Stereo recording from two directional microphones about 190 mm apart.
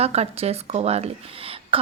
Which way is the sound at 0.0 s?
35° right (ahead or behind).